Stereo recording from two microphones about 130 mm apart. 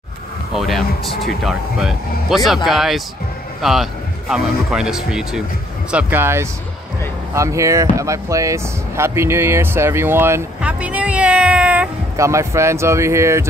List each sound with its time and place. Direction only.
0.5 s speech: centre (ahead or behind)
12.2 s speech: 20° right (ahead or behind)